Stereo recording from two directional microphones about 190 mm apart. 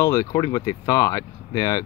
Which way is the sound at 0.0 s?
15° left (ahead or behind).